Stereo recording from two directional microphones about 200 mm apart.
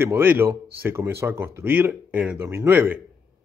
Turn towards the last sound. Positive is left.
turn(degrees=-10)  # may be behind; listen again after turning